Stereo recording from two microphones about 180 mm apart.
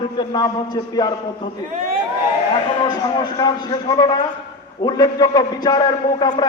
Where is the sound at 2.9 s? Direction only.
25° left (ahead or behind).